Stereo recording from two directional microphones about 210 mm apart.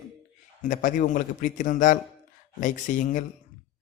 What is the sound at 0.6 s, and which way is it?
A man's voice, 40° left (ahead or behind).